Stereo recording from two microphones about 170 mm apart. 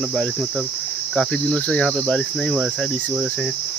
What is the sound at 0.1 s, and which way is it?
Cricket, centre (ahead or behind).